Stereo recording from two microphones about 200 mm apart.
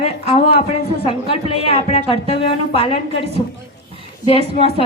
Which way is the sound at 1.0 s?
30° left (ahead or behind).